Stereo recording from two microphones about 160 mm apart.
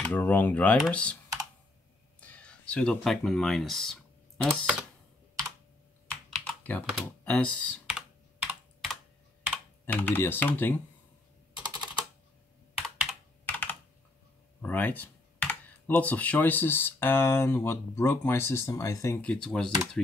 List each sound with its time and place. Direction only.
0.0 s speech: 10° left (ahead or behind)
2.1 s speech: 10° left (ahead or behind)
6.0 s computer keyboard: 5° left (ahead or behind)
6.9 s speech: centre (ahead or behind)
7.8 s computer keyboard: 5° right (ahead or behind)
9.8 s speech: 15° left (ahead or behind)
12.8 s computer keyboard: 5° right (ahead or behind)
13.5 s computer keyboard: 10° left (ahead or behind)
14.6 s speech: 10° left (ahead or behind)
19.2 s speech: 5° left (ahead or behind)